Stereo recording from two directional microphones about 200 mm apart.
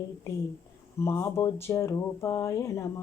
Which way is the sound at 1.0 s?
15° left (ahead or behind).